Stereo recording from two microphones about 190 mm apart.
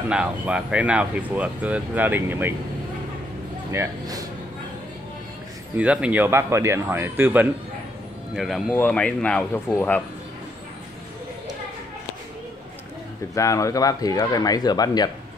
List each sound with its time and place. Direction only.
0.1 s speech: 5° right (ahead or behind)
3.7 s speech: 15° right (ahead or behind)
5.8 s speech: 5° right (ahead or behind)
8.4 s speech: centre (ahead or behind)
13.3 s speech: 15° left (ahead or behind)